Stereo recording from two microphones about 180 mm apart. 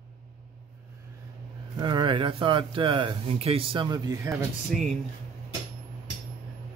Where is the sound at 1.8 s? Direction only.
25° right (ahead or behind).